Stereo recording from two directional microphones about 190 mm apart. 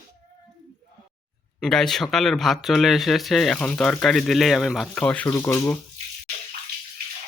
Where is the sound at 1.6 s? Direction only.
5° left (ahead or behind).